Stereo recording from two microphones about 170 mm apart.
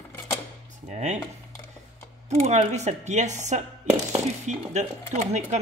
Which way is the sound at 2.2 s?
40° right (ahead or behind).